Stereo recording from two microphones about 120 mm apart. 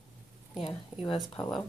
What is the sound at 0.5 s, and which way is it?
Speech, 50° left (ahead or behind).